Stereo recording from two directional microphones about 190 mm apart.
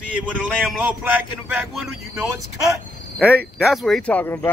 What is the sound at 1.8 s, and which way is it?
Speech, 10° right (ahead or behind).